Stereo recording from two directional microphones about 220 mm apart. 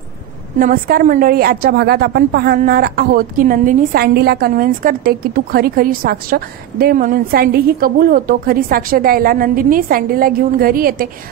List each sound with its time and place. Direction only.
0.6 s a woman's voice: 40° right (ahead or behind)